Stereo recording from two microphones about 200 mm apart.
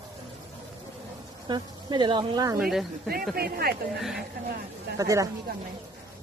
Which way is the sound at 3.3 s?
50° right (ahead or behind).